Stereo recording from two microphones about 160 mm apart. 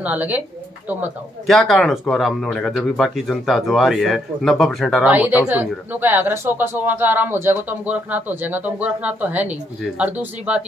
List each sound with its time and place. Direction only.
0.0 s speech: 10° right (ahead or behind)
1.5 s speech: centre (ahead or behind)
5.1 s speech: 10° right (ahead or behind)